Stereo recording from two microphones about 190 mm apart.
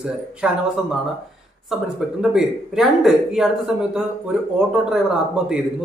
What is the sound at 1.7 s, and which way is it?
Speech, 5° right (ahead or behind).